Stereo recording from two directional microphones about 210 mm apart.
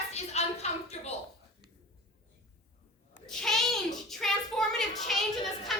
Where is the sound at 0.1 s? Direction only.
30° left (ahead or behind).